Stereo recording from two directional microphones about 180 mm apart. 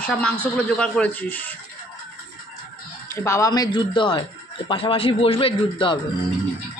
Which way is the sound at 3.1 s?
15° left (ahead or behind).